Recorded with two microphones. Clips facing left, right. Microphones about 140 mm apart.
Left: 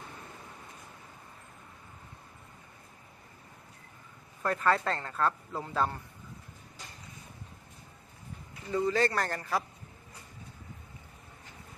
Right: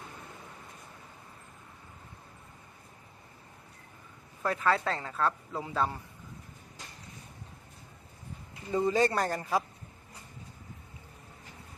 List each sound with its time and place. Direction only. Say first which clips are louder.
4.4 s a man's voice: even; centre (ahead or behind)
8.7 s speech: right 1 dB; 20° right (ahead or behind)